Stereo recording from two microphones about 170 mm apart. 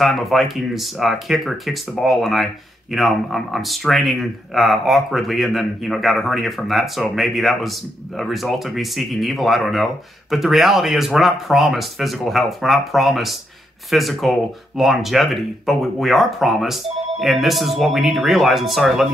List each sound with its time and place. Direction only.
0.0 s speech: centre (ahead or behind)